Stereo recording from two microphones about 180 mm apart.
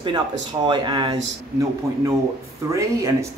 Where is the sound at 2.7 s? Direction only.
15° right (ahead or behind).